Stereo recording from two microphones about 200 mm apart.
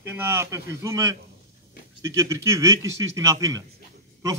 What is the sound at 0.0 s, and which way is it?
A man's voice, 10° right (ahead or behind).